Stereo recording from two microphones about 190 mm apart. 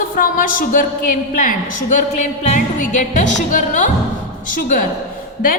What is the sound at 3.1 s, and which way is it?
A woman's voice, 40° left (ahead or behind).